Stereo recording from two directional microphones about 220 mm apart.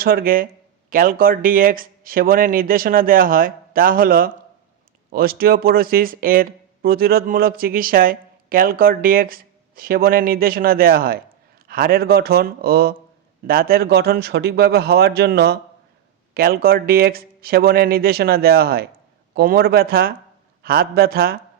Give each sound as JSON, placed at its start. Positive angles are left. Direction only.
{"t": 0.0, "sound": "speech", "side_deg": -40}